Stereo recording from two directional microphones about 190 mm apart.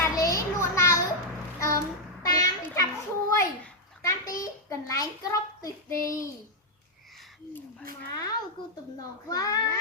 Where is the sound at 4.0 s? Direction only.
15° left (ahead or behind).